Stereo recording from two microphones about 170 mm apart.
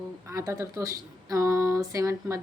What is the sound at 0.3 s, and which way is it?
Speech, 20° right (ahead or behind).